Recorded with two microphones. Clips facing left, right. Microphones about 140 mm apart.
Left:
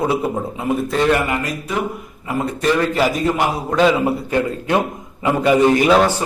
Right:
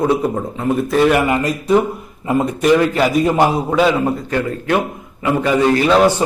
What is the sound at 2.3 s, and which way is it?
Speech, 20° right (ahead or behind).